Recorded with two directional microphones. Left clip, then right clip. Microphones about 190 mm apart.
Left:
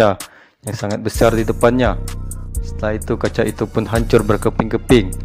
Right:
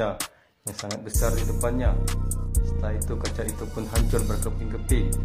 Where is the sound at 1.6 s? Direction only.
45° left (ahead or behind).